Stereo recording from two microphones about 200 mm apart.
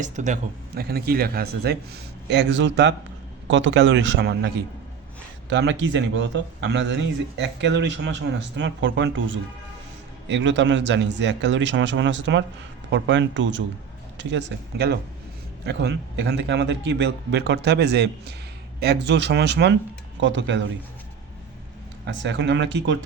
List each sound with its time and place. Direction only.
0.0 s speech: 35° right (ahead or behind)
0.8 s a man's voice: 50° right (ahead or behind)
22.0 s a man's voice: 60° right (ahead or behind)